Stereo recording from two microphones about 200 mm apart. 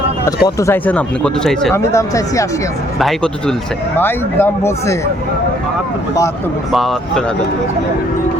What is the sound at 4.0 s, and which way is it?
Speech, 10° left (ahead or behind).